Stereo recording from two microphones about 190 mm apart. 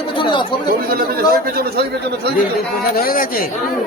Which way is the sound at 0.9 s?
50° right (ahead or behind).